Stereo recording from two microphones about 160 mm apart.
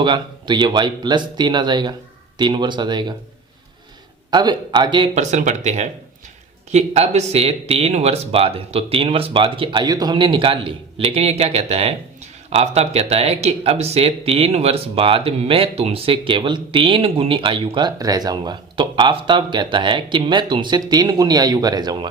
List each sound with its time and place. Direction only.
0.0 s speech: 30° right (ahead or behind)
4.3 s speech: 25° right (ahead or behind)
5.1 s speech: 45° right (ahead or behind); by 22.1 s 25° right (ahead or behind)